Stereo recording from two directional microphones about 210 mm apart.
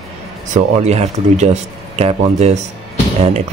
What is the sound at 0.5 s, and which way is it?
Speech, 35° right (ahead or behind).